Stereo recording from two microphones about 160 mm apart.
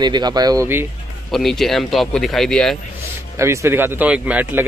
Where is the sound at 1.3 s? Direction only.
Centre (ahead or behind).